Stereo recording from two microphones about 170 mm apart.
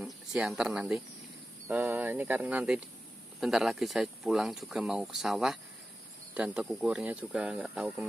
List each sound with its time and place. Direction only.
0.0 s speech: centre (ahead or behind)